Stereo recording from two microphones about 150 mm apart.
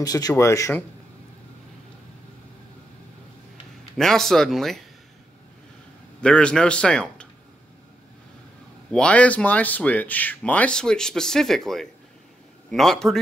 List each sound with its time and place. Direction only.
0.0 s speech: 25° left (ahead or behind)
3.9 s speech: 5° left (ahead or behind)
6.2 s speech: 5° left (ahead or behind)
8.9 s speech: 10° left (ahead or behind)